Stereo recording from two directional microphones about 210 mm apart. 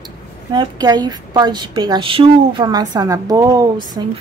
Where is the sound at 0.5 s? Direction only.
20° right (ahead or behind).